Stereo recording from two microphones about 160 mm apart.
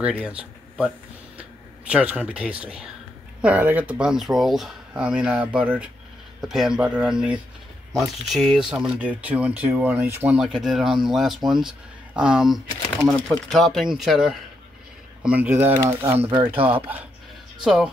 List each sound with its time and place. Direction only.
0.0 s speech: 5° right (ahead or behind)
1.9 s speech: 10° right (ahead or behind)
15.2 s speech: 10° right (ahead or behind)
16.3 s speech: 30° right (ahead or behind)
17.6 s speech: centre (ahead or behind)